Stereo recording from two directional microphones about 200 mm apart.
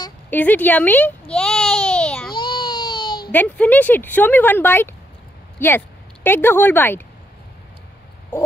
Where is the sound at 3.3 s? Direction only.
10° left (ahead or behind).